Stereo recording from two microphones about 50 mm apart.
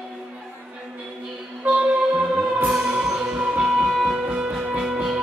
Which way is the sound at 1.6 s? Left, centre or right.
Right.